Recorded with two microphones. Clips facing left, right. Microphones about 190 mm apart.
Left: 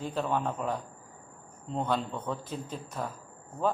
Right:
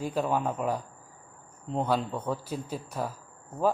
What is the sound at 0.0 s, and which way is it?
A man's voice, 10° right (ahead or behind).